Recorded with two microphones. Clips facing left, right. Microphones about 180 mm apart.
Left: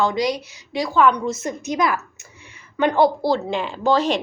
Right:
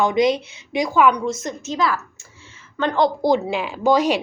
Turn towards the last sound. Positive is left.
turn(degrees=-10)  # may be behind; listen again after turning